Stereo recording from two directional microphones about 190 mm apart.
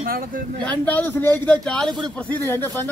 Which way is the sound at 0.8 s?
10° left (ahead or behind).